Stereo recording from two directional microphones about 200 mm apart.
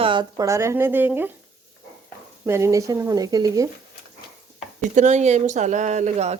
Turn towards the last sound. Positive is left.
turn(degrees=-35)  # may be behind; listen again after turning